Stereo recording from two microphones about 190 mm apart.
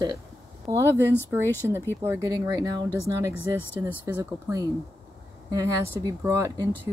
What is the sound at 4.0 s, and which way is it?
Speech, 15° right (ahead or behind).